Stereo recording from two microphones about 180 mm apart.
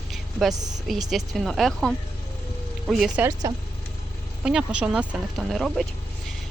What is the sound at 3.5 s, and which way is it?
Speech, 20° right (ahead or behind).